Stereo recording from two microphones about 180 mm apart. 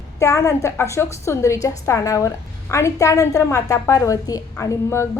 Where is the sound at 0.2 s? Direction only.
15° left (ahead or behind).